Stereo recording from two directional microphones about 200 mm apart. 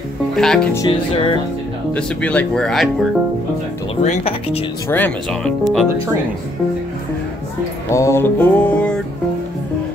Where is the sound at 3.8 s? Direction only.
30° left (ahead or behind).